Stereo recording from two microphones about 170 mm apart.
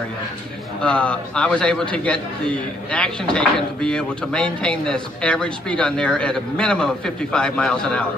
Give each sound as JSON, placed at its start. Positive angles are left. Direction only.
{"t": 0.8, "sound": "a man's voice", "side_deg": 5}